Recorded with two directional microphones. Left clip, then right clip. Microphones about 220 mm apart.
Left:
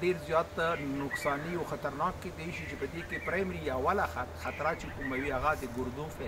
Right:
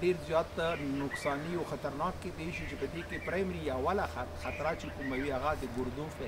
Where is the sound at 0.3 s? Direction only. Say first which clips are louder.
Left 2 dB; centre (ahead or behind).